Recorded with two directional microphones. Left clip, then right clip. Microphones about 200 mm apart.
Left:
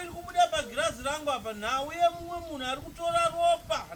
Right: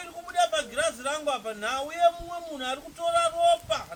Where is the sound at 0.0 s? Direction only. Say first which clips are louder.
Even; 15° right (ahead or behind).